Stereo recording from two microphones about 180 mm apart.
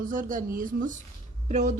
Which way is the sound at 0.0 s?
50° right (ahead or behind).